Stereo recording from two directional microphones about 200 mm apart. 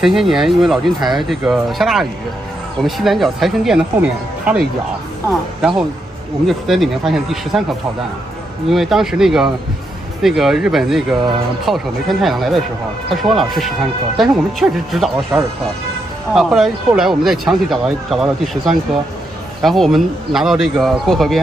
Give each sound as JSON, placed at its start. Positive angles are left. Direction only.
{"t": 0.0, "sound": "speech", "side_deg": 0}
{"t": 6.4, "sound": "speech", "side_deg": 0}
{"t": 8.6, "sound": "speech", "side_deg": 0}
{"t": 16.3, "sound": "speech", "side_deg": 0}